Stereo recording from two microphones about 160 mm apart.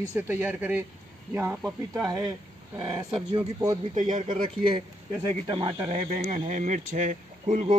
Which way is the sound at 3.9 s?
50° right (ahead or behind).